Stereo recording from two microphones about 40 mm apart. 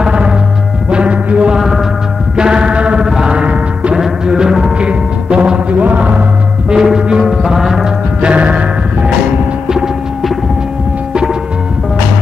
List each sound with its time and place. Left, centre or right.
0.0 s music: right
1.5 s music: centre
2.3 s music: right
3.1 s sheep: centre
3.9 s music: centre
4.7 s music: right
6.7 s music: centre
8.2 s music: right